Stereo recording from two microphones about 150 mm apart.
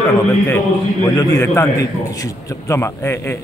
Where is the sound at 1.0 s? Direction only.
20° left (ahead or behind).